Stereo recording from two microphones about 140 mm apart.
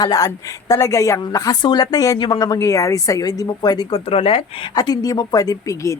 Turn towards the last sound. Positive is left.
turn(degrees=20)  # may be behind; listen again after turning